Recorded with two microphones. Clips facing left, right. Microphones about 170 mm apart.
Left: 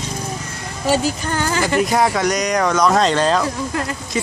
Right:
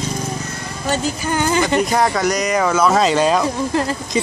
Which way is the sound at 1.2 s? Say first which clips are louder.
Right 3 dB; 15° right (ahead or behind).